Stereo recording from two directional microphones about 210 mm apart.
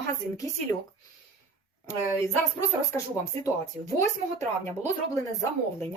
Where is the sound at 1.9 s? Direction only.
15° left (ahead or behind).